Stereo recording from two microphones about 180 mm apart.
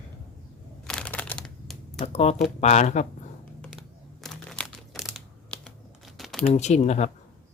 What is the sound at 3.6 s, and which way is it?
Computer keyboard, centre (ahead or behind).